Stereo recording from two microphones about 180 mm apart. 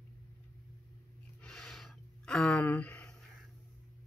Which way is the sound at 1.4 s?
5° left (ahead or behind).